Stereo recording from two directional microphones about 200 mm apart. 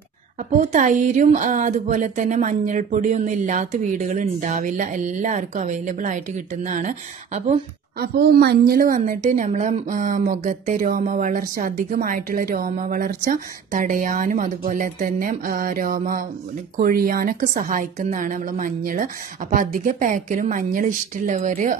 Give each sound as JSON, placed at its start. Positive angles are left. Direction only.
{"t": 0.7, "sound": "speech", "side_deg": -40}
{"t": 8.0, "sound": "a woman's voice", "side_deg": -50}